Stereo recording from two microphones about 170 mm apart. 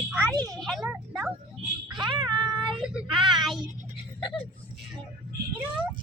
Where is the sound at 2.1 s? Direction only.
25° right (ahead or behind).